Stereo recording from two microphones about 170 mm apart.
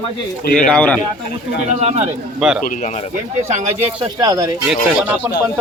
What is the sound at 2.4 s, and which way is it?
Speech, 5° right (ahead or behind).